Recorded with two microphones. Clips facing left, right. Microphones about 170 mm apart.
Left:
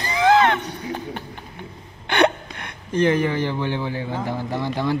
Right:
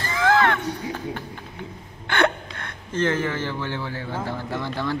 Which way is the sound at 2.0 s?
20° left (ahead or behind).